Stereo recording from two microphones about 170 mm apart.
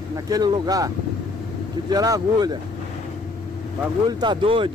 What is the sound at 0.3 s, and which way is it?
Speech, 20° right (ahead or behind).